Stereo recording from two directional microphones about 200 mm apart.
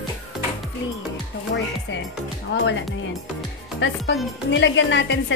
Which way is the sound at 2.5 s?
70° left (ahead or behind).